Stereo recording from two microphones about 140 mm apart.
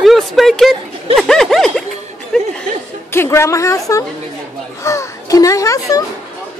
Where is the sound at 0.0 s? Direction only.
Centre (ahead or behind).